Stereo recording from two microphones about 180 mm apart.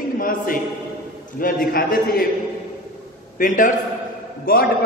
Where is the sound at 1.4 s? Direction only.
50° left (ahead or behind).